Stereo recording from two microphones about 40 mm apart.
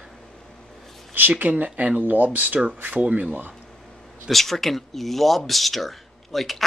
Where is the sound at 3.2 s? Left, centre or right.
Right.